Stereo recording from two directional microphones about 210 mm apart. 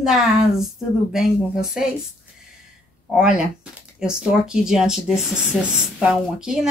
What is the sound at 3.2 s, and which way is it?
Speech, 5° right (ahead or behind).